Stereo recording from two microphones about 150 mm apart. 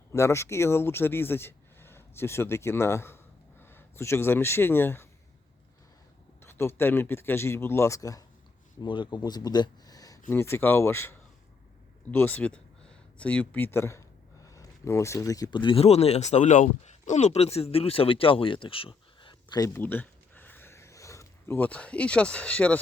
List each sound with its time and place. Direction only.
0.1 s speech: 20° left (ahead or behind)
6.4 s speech: 15° left (ahead or behind)
19.7 s a sound: 10° left (ahead or behind)